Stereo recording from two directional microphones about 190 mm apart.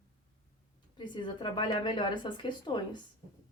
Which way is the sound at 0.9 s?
25° left (ahead or behind).